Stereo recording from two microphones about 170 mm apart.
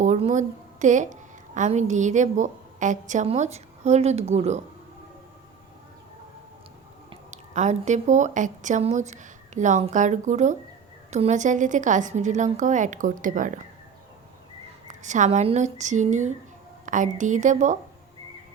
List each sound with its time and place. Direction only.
0.0 s a woman's voice: 45° right (ahead or behind)
7.1 s a woman's voice: 45° right (ahead or behind)
14.8 s a woman's voice: 45° right (ahead or behind)